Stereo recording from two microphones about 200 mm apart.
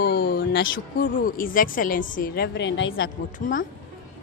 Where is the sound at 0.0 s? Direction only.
55° left (ahead or behind).